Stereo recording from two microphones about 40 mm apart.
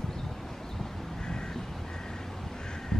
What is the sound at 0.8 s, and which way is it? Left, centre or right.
Vehicle, centre.